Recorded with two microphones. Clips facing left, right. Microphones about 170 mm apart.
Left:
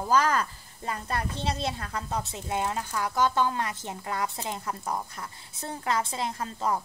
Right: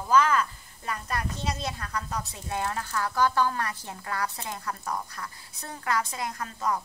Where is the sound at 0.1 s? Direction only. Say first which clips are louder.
Right 2 dB; 35° left (ahead or behind).